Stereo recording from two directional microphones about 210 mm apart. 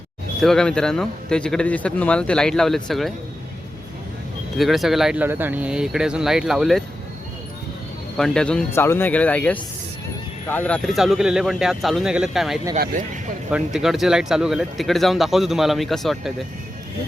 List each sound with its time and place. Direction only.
0.4 s speech: 5° left (ahead or behind)
4.5 s speech: centre (ahead or behind)
8.1 s speech: centre (ahead or behind)
12.7 s speech: 35° right (ahead or behind)
13.7 s speech: centre (ahead or behind)